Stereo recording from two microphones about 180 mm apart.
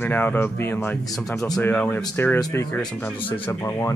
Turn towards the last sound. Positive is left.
turn(degrees=15)  # may be behind; listen again after turning